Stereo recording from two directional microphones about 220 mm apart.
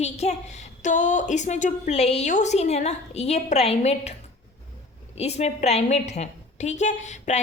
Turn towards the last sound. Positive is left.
turn(degrees=30)  # may be behind; listen again after turning